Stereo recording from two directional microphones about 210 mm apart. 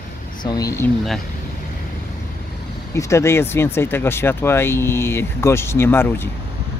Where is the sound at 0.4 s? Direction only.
20° left (ahead or behind).